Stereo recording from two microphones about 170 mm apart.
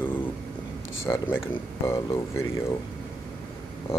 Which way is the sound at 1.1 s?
15° left (ahead or behind).